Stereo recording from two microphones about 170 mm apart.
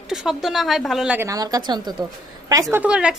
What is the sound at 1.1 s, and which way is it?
Speech, 20° right (ahead or behind).